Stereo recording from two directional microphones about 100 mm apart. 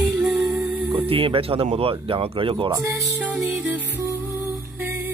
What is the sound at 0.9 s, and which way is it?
Speech, 65° right (ahead or behind).